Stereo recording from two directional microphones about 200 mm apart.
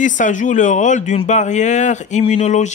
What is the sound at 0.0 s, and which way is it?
Speech, 40° left (ahead or behind).